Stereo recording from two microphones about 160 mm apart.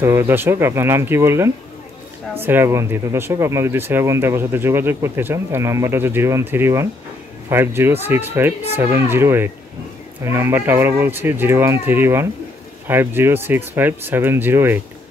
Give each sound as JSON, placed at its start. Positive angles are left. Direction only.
{"t": 0.0, "sound": "speech", "side_deg": -15}